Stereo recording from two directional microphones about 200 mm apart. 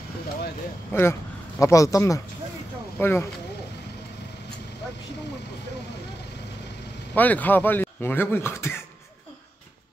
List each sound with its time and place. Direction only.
0.9 s speech: 10° left (ahead or behind)
7.2 s speech: 10° left (ahead or behind)